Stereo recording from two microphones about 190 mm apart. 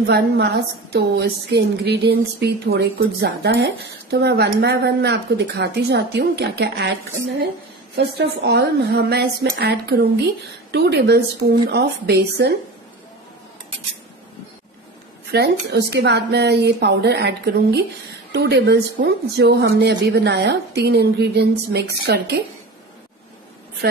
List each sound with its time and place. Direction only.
0.0 s a woman's voice: 60° right (ahead or behind)
15.3 s a woman's voice: 60° right (ahead or behind)
23.8 s a woman's voice: 55° right (ahead or behind)